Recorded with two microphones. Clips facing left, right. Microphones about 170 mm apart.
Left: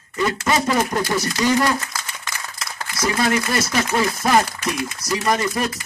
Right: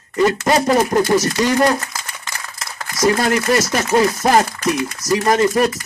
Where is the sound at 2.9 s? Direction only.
40° right (ahead or behind).